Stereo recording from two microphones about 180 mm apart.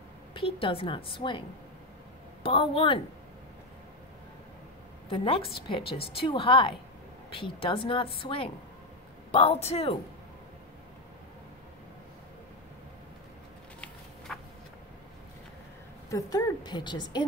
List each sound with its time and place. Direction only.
0.3 s a woman's voice: 30° left (ahead or behind)
2.4 s a woman's voice: 30° left (ahead or behind)
5.1 s a woman's voice: 30° left (ahead or behind)
13.7 s a sound: 5° left (ahead or behind)
16.1 s a woman's voice: 20° left (ahead or behind)